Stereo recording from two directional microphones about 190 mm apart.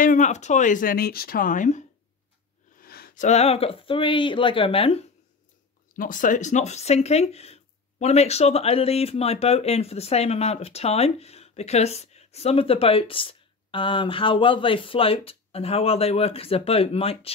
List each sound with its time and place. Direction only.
0.0 s speech: 40° left (ahead or behind)
2.8 s a sound: 50° left (ahead or behind)
3.3 s speech: 35° left (ahead or behind)
5.9 s speech: 45° left (ahead or behind)